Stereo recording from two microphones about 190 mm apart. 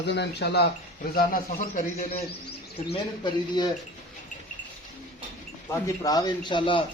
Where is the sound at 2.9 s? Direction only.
25° left (ahead or behind).